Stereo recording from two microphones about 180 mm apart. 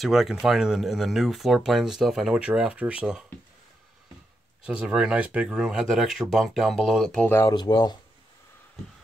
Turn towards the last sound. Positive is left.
turn(degrees=25)  # may be behind; listen again after turning